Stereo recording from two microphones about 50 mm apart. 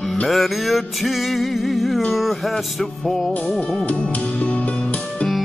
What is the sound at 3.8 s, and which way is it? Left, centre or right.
Music, left.